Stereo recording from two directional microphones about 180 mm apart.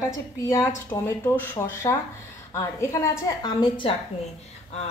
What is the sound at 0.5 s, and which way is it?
A woman's voice, 15° left (ahead or behind).